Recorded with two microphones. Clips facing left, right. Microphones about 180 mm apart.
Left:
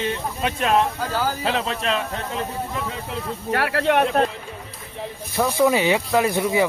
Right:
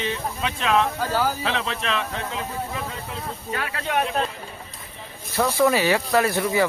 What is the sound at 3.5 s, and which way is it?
Speech, 70° left (ahead or behind).